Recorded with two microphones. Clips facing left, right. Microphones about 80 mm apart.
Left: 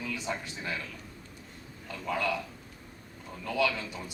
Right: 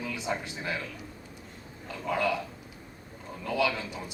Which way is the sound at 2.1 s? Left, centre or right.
Centre.